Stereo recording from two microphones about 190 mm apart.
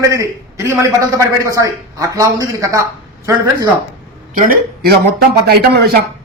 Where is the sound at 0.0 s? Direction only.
15° right (ahead or behind).